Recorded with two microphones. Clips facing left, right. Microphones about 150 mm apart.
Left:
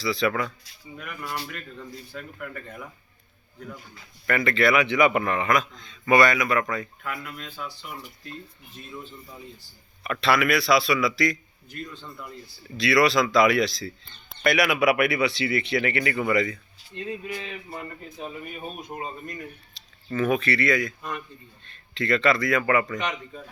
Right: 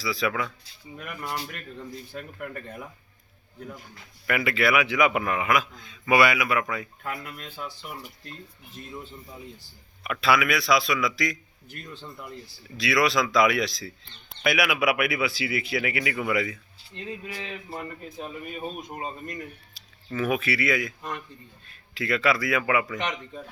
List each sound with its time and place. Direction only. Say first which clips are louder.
0.0 s a man's voice: left 3 dB; centre (ahead or behind)
2.1 s speech: even; 40° right (ahead or behind)
4.3 s a man's voice: left 2 dB; 5° right (ahead or behind)
7.0 s speech: even; 35° right (ahead or behind)
10.0 s a man's voice: left 1 dB; 5° right (ahead or behind)
12.7 s a man's voice: left 3 dB; centre (ahead or behind)
19.7 s a man's voice: left 3 dB; 5° right (ahead or behind)